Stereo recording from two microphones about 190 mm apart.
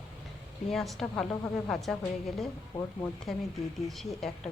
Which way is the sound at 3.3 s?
Centre (ahead or behind).